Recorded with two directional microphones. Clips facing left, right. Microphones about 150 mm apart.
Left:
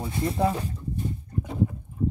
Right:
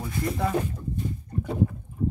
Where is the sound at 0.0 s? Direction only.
25° left (ahead or behind).